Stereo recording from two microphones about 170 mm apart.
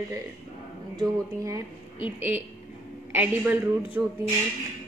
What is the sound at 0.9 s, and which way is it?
A woman's voice, 20° right (ahead or behind).